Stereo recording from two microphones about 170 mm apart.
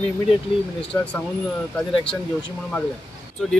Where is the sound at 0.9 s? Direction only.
10° left (ahead or behind).